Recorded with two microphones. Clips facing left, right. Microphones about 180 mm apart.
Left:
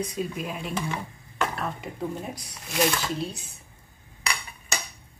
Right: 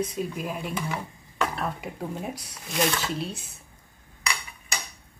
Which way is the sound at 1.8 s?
5° right (ahead or behind).